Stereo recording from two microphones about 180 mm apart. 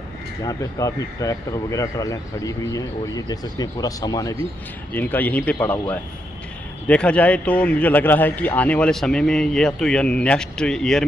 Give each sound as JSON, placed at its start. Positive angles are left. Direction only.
{"t": 0.5, "sound": "a man's voice", "side_deg": 20}